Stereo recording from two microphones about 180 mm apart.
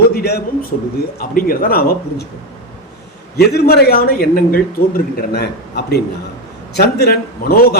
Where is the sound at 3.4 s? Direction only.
60° left (ahead or behind).